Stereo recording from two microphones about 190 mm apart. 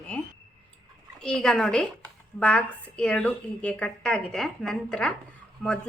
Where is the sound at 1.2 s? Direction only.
5° left (ahead or behind).